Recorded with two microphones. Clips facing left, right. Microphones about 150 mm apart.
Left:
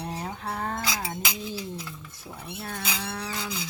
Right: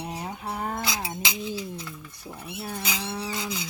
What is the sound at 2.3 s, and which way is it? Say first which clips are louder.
Livestock: right 2 dB; 5° right (ahead or behind).